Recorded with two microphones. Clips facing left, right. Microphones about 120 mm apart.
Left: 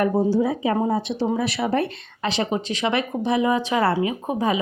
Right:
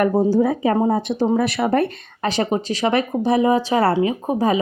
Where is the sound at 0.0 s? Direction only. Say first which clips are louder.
Right 3 dB; 50° right (ahead or behind).